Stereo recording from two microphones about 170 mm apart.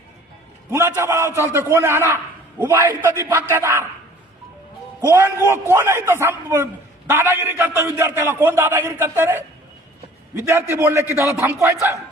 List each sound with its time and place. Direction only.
0.7 s a man's voice: 15° right (ahead or behind)
4.9 s a man's voice: 15° right (ahead or behind)